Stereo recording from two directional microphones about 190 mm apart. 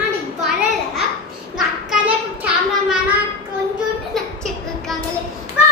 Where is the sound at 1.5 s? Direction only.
5° right (ahead or behind).